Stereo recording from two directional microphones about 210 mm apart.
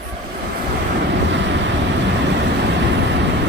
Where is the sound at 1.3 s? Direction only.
60° right (ahead or behind).